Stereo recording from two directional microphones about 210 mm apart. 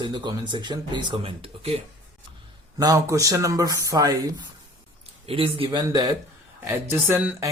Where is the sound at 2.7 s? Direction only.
15° right (ahead or behind).